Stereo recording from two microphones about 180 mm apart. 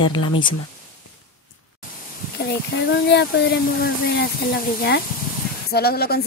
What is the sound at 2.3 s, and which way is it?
Speech, 70° left (ahead or behind).